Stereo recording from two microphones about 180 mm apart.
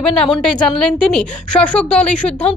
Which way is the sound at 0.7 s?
5° left (ahead or behind).